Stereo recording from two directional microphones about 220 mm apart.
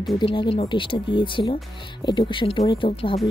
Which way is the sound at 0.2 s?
25° left (ahead or behind).